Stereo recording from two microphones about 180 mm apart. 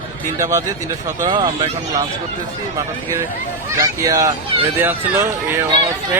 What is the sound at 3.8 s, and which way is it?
Speech, 20° right (ahead or behind).